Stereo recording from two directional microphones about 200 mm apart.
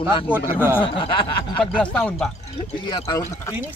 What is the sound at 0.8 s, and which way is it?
Snicker, 25° left (ahead or behind).